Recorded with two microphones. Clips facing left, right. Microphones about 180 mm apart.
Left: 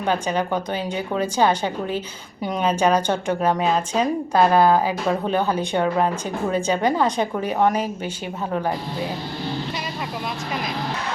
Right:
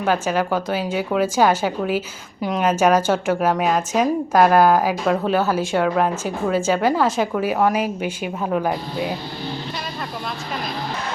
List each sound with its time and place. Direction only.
0.0 s a woman's voice: 5° right (ahead or behind)